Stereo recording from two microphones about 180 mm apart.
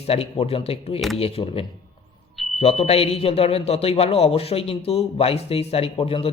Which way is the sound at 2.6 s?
35° left (ahead or behind).